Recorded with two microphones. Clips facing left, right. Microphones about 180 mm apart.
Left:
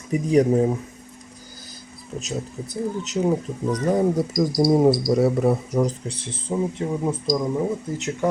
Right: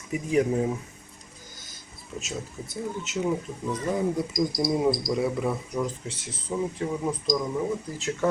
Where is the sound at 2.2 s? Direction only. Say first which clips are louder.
Left 5 dB; 35° left (ahead or behind).